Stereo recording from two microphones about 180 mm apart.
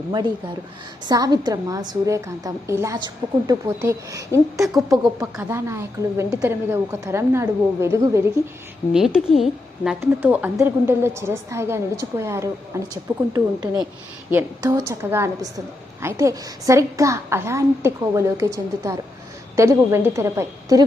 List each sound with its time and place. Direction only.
1.0 s a woman's voice: 20° right (ahead or behind)
8.9 s a woman's voice: centre (ahead or behind)